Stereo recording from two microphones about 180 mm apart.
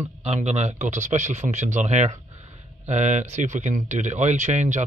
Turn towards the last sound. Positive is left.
turn(degrees=-40)  # may be behind; listen again after turning